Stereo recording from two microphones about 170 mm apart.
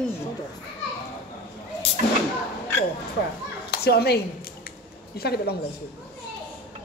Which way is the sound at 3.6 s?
70° left (ahead or behind).